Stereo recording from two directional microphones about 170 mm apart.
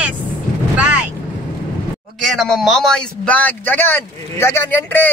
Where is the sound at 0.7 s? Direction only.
10° right (ahead or behind).